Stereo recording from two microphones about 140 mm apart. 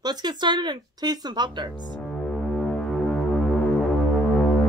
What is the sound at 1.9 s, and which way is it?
Music, centre (ahead or behind).